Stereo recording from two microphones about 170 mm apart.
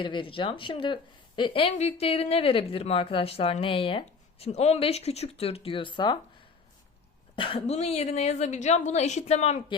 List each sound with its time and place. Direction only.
0.0 s speech: 30° left (ahead or behind)
7.3 s speech: 30° left (ahead or behind)